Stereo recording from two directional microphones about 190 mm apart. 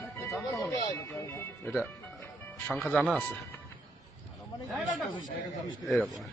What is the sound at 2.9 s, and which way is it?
Speech, 5° right (ahead or behind).